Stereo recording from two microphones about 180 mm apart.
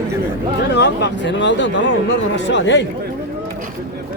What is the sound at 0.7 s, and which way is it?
Speech, 70° left (ahead or behind).